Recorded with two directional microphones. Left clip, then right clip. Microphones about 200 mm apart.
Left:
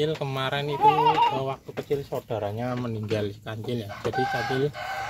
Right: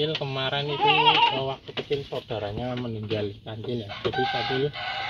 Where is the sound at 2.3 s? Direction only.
20° left (ahead or behind); by 4.4 s 40° left (ahead or behind).